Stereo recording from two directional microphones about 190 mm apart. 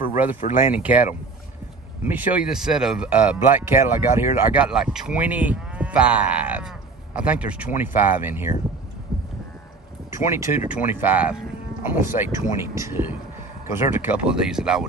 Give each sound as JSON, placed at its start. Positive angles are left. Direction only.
{"t": 0.0, "sound": "speech", "side_deg": -10}
{"t": 0.4, "sound": "speech", "side_deg": 40}
{"t": 0.7, "sound": "speech", "side_deg": -10}
{"t": 2.0, "sound": "speech", "side_deg": -10}
{"t": 9.1, "sound": "music", "side_deg": 0}
{"t": 10.1, "sound": "speech", "side_deg": -15}